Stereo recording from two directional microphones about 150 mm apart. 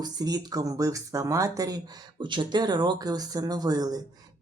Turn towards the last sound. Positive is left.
turn(degrees=-25)  # may be behind; listen again after turning